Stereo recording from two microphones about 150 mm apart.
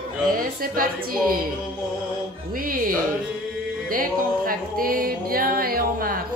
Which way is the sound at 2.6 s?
70° right (ahead or behind).